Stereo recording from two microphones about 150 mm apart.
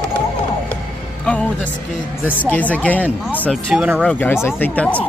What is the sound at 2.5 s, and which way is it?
Speech, 10° left (ahead or behind).